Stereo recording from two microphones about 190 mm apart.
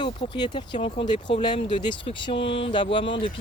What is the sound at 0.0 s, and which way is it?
Speech, 25° left (ahead or behind).